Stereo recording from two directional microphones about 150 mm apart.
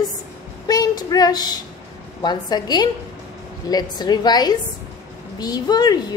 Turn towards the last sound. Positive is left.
turn(degrees=25)  # may be behind; listen again after turning